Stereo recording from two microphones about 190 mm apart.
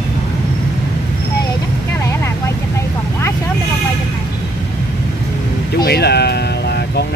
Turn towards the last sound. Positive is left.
turn(degrees=60)  # may be behind; listen again after turning